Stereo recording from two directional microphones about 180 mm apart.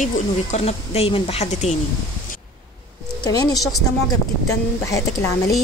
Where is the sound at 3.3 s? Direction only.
20° left (ahead or behind).